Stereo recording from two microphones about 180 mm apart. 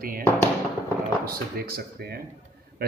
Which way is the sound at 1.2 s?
55° right (ahead or behind).